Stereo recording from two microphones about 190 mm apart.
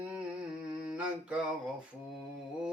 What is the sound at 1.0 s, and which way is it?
Speech, 5° right (ahead or behind).